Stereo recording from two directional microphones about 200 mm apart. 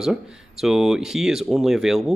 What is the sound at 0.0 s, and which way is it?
Speech, 5° right (ahead or behind).